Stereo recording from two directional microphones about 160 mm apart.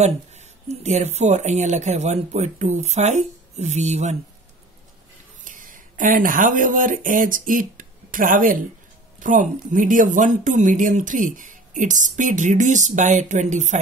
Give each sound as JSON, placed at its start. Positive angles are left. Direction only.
{"t": 0.0, "sound": "speech", "side_deg": -45}
{"t": 5.4, "sound": "speech", "side_deg": -60}